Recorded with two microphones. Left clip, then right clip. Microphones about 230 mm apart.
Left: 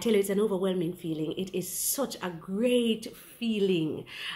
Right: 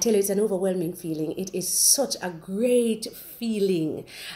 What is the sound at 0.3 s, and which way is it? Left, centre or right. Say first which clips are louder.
Speech: right 4 dB; centre.